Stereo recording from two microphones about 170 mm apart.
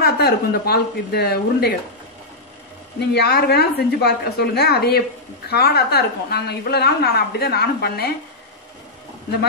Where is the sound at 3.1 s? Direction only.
70° left (ahead or behind).